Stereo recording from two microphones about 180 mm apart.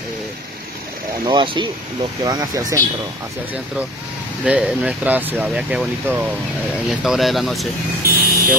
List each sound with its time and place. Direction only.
1.2 s speech: 30° right (ahead or behind)
4.5 s speech: 5° right (ahead or behind)
8.2 s vehicle: 50° right (ahead or behind)